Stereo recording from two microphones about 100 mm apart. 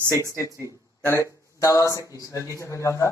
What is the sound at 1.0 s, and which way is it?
Speech, 30° left (ahead or behind).